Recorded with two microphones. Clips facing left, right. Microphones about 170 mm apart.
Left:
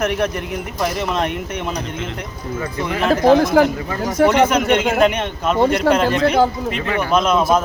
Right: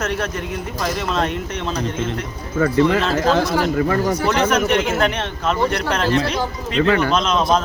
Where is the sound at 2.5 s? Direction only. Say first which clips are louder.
Right 9 dB; 70° right (ahead or behind).